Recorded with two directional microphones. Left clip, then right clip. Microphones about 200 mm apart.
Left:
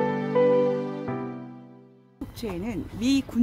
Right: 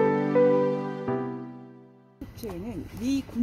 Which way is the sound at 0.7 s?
10° left (ahead or behind).